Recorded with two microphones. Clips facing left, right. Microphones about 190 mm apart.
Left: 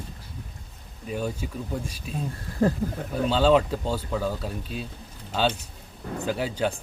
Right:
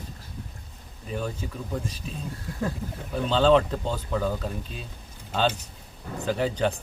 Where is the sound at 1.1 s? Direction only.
10° left (ahead or behind).